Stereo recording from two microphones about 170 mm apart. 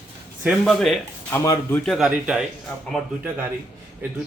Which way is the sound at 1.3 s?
15° left (ahead or behind).